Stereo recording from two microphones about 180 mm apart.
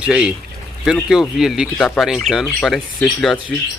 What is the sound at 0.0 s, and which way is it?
Speech, 5° right (ahead or behind).